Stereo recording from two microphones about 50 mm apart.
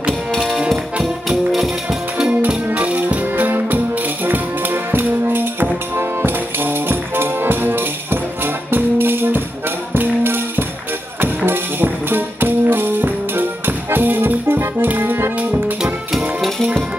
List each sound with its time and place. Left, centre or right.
0.4 s music: centre
2.4 s music: right
3.4 s music: right
16.1 s music: centre